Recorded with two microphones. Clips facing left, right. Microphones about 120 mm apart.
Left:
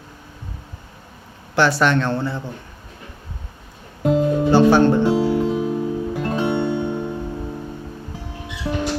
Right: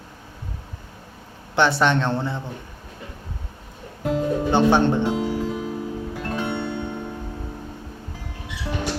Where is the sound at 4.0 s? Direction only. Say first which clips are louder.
Left 6 dB; 25° left (ahead or behind).